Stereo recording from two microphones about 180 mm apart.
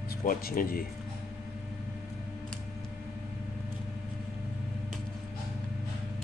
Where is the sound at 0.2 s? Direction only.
50° left (ahead or behind).